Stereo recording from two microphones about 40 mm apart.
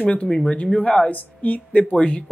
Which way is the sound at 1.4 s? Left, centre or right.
Left.